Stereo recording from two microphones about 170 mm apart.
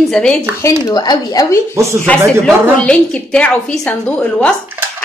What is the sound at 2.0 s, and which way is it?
Speech, 5° left (ahead or behind).